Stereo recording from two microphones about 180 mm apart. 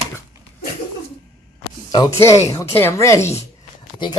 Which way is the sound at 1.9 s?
15° left (ahead or behind).